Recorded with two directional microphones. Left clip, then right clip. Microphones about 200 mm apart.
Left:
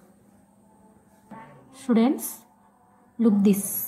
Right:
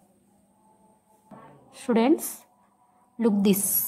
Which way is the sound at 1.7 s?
45° right (ahead or behind).